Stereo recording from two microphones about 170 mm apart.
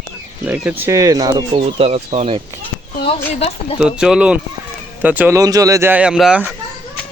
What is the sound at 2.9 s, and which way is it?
Speech, 35° left (ahead or behind).